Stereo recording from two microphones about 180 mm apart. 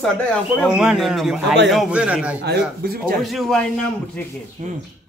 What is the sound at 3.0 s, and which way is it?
Speech, centre (ahead or behind).